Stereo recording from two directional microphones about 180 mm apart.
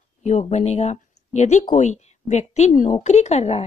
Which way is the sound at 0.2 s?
40° left (ahead or behind).